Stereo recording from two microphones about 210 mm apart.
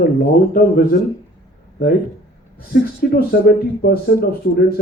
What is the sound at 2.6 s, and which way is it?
Speech, 45° left (ahead or behind).